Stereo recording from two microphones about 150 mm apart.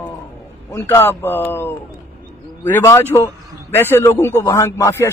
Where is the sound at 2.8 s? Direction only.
25° left (ahead or behind).